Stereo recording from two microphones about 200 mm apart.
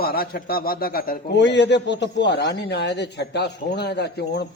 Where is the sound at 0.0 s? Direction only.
50° left (ahead or behind).